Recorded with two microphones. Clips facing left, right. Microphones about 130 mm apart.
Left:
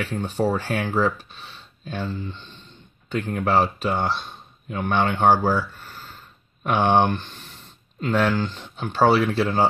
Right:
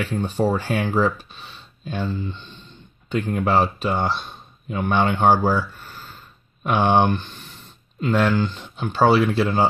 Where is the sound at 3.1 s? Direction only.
15° right (ahead or behind).